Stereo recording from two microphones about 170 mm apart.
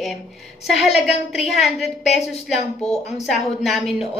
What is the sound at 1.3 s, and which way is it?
A woman's voice, centre (ahead or behind).